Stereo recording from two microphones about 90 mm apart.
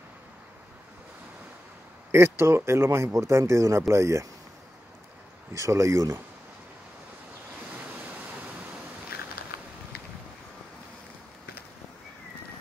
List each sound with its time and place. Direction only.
2.1 s speech: 30° right (ahead or behind)
5.5 s speech: 35° right (ahead or behind)
7.7 s waves: 15° right (ahead or behind)